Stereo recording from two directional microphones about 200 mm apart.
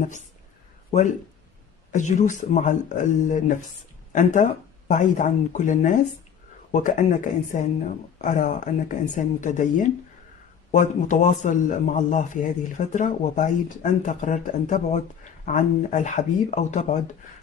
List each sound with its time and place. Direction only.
1.9 s a man's voice: 35° left (ahead or behind)